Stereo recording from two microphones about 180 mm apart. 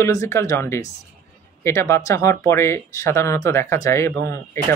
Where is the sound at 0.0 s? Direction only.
15° left (ahead or behind).